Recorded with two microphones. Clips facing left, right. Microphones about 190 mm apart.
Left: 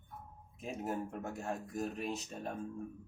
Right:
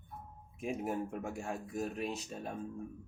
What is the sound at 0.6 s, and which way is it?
Speech, 10° right (ahead or behind).